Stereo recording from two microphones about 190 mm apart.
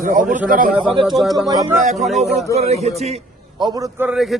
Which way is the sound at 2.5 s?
35° right (ahead or behind).